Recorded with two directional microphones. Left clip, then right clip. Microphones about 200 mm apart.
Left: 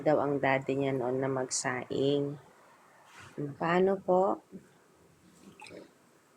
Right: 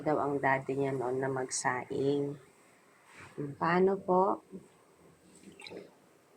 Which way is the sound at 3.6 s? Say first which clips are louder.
Even; 20° left (ahead or behind).